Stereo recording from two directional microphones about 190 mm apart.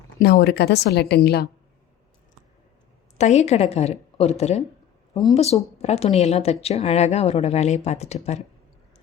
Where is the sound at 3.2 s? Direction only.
35° left (ahead or behind).